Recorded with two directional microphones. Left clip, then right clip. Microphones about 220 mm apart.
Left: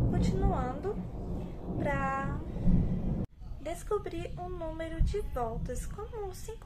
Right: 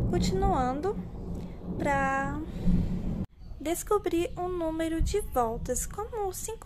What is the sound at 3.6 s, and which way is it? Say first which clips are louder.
A woman's voice: right 6 dB; 55° right (ahead or behind).